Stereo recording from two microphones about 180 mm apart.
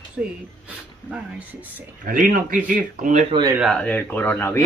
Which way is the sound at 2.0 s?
45° right (ahead or behind).